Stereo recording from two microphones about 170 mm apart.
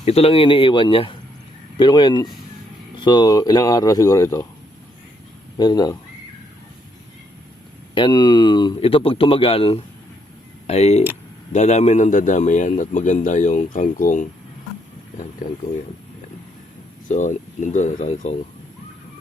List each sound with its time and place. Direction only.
0.0 s speech: 40° left (ahead or behind); by 4.4 s 20° left (ahead or behind)
5.5 s speech: 25° left (ahead or behind)
7.9 s a man's voice: 25° left (ahead or behind); by 14.3 s 50° left (ahead or behind)
17.1 s a man's voice: 45° left (ahead or behind)